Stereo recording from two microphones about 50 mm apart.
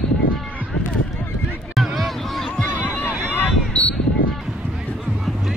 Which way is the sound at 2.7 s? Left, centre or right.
Left.